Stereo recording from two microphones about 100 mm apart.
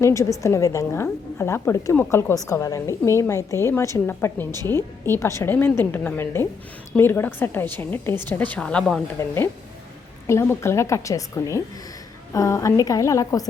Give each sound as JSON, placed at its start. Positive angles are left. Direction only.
{"t": 0.0, "sound": "a woman's voice", "side_deg": 30}
{"t": 9.1, "sound": "a woman's voice", "side_deg": 30}